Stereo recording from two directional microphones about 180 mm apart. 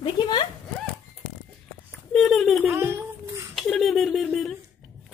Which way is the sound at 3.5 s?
Centre (ahead or behind).